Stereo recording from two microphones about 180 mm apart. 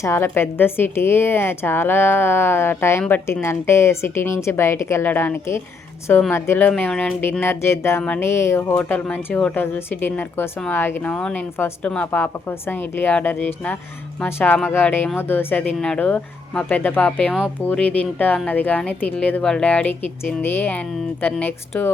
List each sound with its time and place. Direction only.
0.0 s speech: 15° left (ahead or behind)